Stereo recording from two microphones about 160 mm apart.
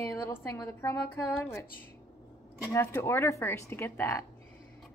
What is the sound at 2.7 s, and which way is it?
Speech, 15° left (ahead or behind).